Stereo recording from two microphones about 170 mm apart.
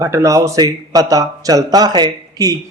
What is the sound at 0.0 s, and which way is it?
A man's voice, 20° right (ahead or behind).